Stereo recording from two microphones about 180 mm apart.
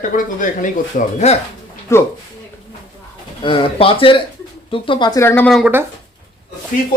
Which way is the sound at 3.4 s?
30° left (ahead or behind).